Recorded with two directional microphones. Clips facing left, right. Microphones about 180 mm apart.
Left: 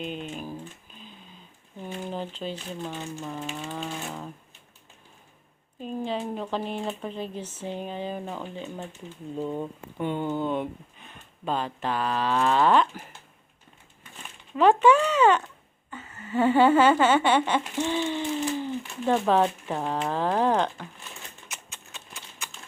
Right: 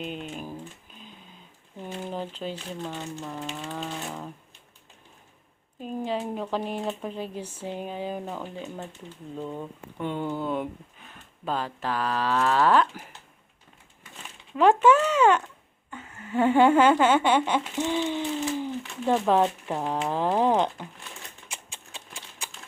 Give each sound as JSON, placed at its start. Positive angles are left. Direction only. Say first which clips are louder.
{"t": 0.0, "sound": "speech", "louder": "left 1 dB", "side_deg": -5}
{"t": 1.8, "sound": "speech", "louder": "even", "side_deg": -5}
{"t": 5.8, "sound": "speech", "louder": "even", "side_deg": -5}
{"t": 9.4, "sound": "speech", "louder": "left 4 dB", "side_deg": 10}
{"t": 14.6, "sound": "speech", "louder": "even", "side_deg": -10}
{"t": 21.4, "sound": "typing", "louder": "right 1 dB", "side_deg": -30}